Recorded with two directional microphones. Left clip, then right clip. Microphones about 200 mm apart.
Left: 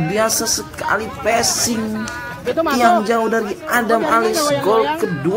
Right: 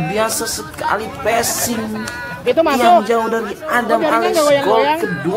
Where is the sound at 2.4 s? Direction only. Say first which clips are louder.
Right 5 dB; 15° right (ahead or behind).